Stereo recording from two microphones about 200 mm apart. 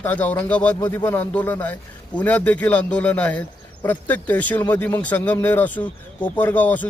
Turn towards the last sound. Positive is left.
turn(degrees=10)  # may be behind; listen again after turning